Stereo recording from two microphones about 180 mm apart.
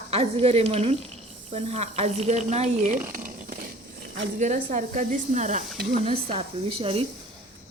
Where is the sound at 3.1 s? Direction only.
50° right (ahead or behind).